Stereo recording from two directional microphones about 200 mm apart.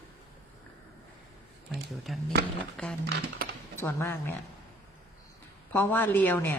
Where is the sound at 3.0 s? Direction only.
55° right (ahead or behind).